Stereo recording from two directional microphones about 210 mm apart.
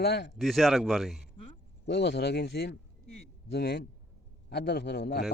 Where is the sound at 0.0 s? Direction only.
50° left (ahead or behind).